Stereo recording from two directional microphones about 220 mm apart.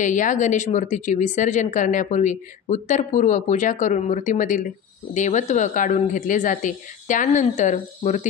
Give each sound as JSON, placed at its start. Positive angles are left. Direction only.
{"t": 0.0, "sound": "speech", "side_deg": 35}